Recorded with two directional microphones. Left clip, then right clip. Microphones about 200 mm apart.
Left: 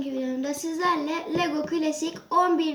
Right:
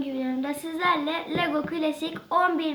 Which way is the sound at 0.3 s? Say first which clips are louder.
Left 1 dB; 30° right (ahead or behind).